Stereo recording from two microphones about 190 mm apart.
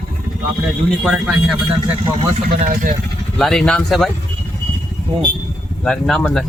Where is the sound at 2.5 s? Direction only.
45° right (ahead or behind).